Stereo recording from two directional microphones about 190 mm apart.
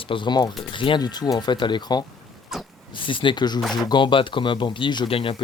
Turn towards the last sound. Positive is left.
turn(degrees=30)  # may be behind; listen again after turning